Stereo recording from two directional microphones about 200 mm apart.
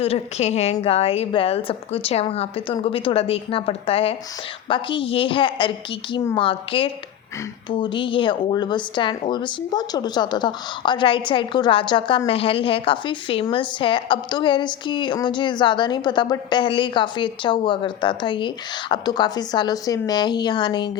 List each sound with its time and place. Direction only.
0.0 s speech: 30° left (ahead or behind)